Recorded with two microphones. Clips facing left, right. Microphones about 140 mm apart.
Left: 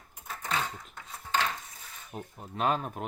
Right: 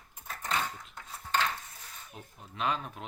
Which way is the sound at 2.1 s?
40° left (ahead or behind).